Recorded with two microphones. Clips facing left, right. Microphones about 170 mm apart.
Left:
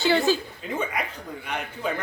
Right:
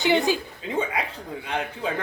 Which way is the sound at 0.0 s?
20° right (ahead or behind).